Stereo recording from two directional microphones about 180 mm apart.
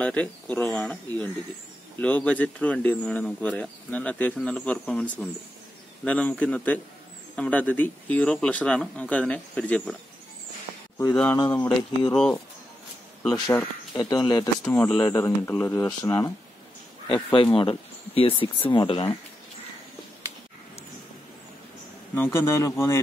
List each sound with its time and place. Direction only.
0.0 s speech: 10° left (ahead or behind)
12.1 s speech: 5° left (ahead or behind)
13.9 s speech: 20° left (ahead or behind)
14.7 s speech: 5° left (ahead or behind)
15.0 s speech: 20° left (ahead or behind)
22.1 s speech: 15° left (ahead or behind)